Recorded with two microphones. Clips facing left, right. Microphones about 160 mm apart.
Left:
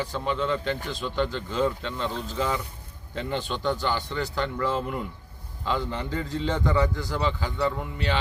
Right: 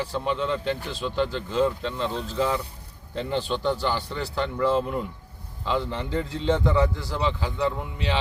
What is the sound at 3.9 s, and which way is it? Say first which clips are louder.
Speech: even; 5° right (ahead or behind).